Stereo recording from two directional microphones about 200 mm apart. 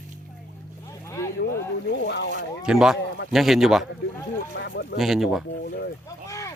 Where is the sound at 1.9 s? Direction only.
60° left (ahead or behind).